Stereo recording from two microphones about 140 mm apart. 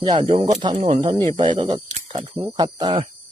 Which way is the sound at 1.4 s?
35° right (ahead or behind).